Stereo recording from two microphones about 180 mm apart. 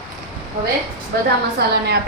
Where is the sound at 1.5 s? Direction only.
65° right (ahead or behind).